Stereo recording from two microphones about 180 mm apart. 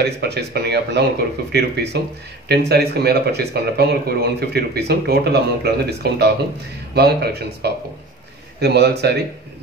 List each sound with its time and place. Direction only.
0.2 s a man's voice: 65° right (ahead or behind)